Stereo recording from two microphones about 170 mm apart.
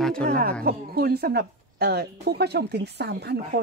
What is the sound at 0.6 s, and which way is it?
A woman's voice, 65° right (ahead or behind).